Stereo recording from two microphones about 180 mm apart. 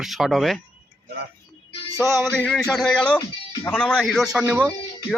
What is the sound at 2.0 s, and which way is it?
Speech, centre (ahead or behind).